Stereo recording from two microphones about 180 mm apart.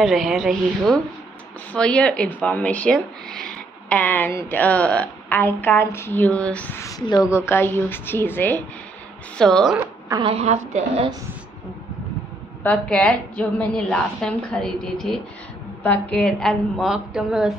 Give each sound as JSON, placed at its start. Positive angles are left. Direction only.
{"t": 0.0, "sound": "a woman's voice", "side_deg": 0}
{"t": 10.2, "sound": "a woman's voice", "side_deg": -35}
{"t": 12.6, "sound": "a woman's voice", "side_deg": 5}